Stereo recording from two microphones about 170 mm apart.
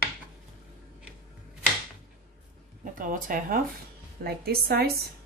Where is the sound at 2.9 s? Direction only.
50° right (ahead or behind).